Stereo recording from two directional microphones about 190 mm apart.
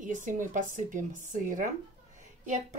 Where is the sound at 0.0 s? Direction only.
45° right (ahead or behind).